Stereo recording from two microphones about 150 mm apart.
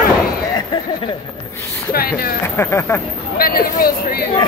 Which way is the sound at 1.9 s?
85° left.